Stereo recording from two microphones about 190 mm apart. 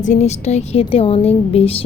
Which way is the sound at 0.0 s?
35° left (ahead or behind).